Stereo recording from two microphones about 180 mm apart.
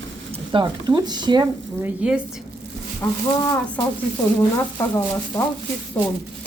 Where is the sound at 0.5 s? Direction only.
25° right (ahead or behind).